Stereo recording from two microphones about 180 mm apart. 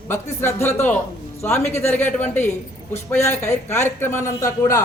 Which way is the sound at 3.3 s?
15° left (ahead or behind).